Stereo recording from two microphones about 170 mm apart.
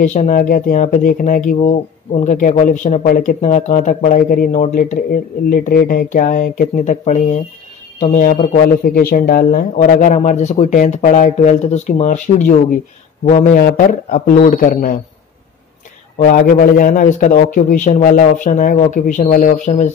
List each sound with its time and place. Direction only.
0.0 s speech: 45° left (ahead or behind)
13.6 s speech: 60° left (ahead or behind)
16.2 s speech: 55° left (ahead or behind)